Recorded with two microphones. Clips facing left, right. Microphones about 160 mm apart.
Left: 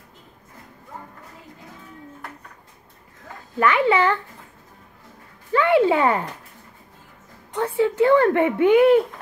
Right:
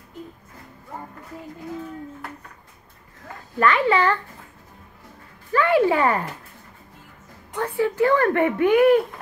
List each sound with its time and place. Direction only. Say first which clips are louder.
3.5 s a child's voice: left 1 dB; 15° left (ahead or behind)
5.5 s speech: left 1 dB; 20° left (ahead or behind)
7.5 s speech: left 2 dB; 15° left (ahead or behind)